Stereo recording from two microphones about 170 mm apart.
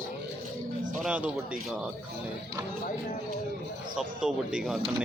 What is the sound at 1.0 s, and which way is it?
Speech, 5° right (ahead or behind).